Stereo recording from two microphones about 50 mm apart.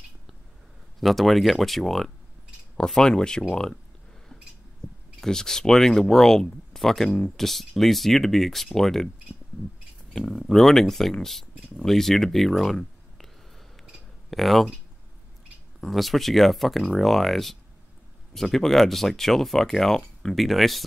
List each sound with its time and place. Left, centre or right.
1.0 s speech: centre
5.2 s speech: centre
7.1 s speech: left
7.3 s speech: centre
10.1 s speech: centre
14.3 s speech: centre
15.8 s speech: centre